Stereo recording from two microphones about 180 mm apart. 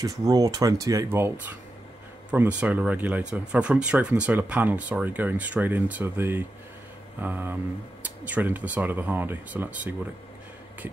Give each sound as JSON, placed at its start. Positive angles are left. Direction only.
{"t": 0.0, "sound": "speech", "side_deg": -20}